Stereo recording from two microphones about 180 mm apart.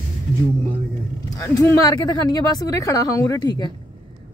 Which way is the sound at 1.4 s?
15° left (ahead or behind).